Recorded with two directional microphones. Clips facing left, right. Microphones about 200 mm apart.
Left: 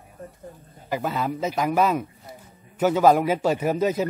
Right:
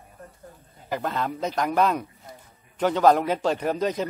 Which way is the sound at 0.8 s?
5° left (ahead or behind).